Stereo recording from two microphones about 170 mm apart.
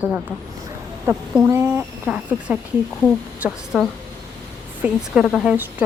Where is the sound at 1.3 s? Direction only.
10° right (ahead or behind).